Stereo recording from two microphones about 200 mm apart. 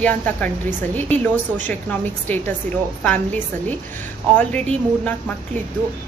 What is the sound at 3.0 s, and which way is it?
A woman's voice, 5° left (ahead or behind).